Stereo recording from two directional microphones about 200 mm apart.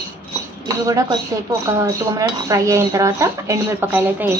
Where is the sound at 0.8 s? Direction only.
15° right (ahead or behind).